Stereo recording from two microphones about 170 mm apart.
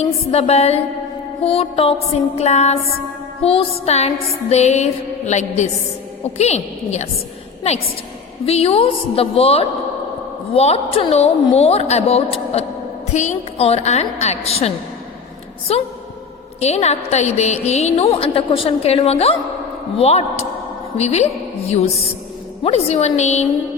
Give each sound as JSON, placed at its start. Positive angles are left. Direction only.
{"t": 0.0, "sound": "a woman's voice", "side_deg": 35}
{"t": 15.7, "sound": "a woman's voice", "side_deg": 35}